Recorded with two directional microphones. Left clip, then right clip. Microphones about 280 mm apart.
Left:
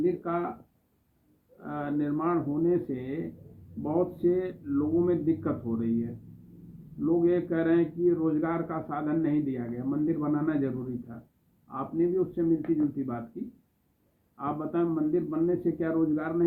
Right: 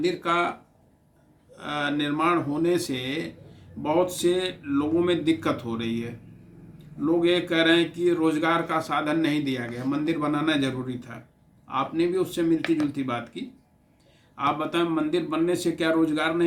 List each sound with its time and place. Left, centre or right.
0.0 s a man's voice: right
1.6 s a man's voice: right
7.0 s a man's voice: right
14.3 s a man's voice: right